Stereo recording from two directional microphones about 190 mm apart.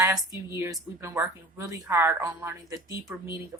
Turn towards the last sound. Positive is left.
turn(degrees=-10)  # may be behind; listen again after turning